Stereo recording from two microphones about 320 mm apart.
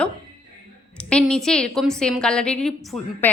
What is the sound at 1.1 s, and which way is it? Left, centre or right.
A woman's voice, centre.